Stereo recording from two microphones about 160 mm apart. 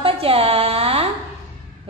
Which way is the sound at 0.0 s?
35° right (ahead or behind).